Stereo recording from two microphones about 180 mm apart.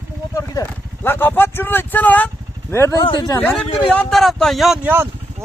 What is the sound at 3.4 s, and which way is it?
Speech, 10° left (ahead or behind).